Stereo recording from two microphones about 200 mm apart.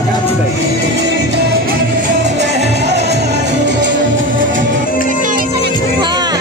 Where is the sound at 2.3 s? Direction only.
60° right (ahead or behind).